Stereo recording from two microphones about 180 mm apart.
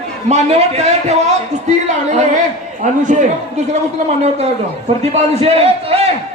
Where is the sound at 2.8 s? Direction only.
45° right (ahead or behind).